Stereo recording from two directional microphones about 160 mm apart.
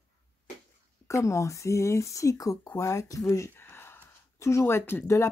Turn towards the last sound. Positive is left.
turn(degrees=20)  # may be behind; listen again after turning